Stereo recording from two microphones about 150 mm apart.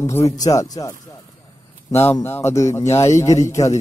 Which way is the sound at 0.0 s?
20° left (ahead or behind).